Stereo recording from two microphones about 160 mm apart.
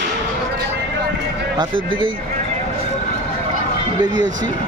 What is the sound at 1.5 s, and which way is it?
Speech, 30° right (ahead or behind).